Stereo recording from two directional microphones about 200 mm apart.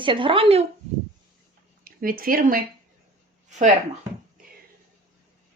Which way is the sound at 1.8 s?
45° right (ahead or behind).